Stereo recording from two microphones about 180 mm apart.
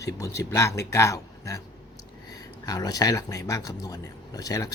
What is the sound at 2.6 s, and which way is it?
Speech, 20° left (ahead or behind).